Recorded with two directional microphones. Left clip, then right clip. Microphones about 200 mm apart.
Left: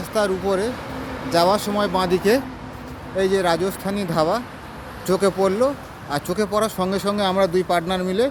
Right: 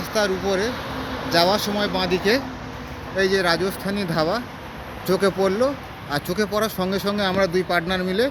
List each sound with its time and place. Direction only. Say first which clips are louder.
0.1 s speech: left 1 dB; 10° left (ahead or behind); by 2.4 s 30° left (ahead or behind)
3.2 s speech: left 1 dB; 10° left (ahead or behind)